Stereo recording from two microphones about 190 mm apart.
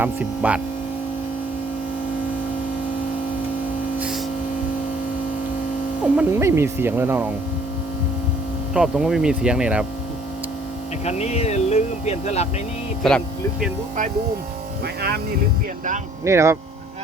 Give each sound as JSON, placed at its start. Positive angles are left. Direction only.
{"t": 0.0, "sound": "speech", "side_deg": -5}
{"t": 6.1, "sound": "speech", "side_deg": -15}
{"t": 8.7, "sound": "speech", "side_deg": -5}
{"t": 11.0, "sound": "speech", "side_deg": 35}
{"t": 13.0, "sound": "speech", "side_deg": 0}
{"t": 16.2, "sound": "speech", "side_deg": -15}